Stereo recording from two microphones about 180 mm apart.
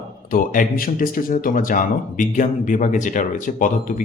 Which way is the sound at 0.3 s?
50° left (ahead or behind).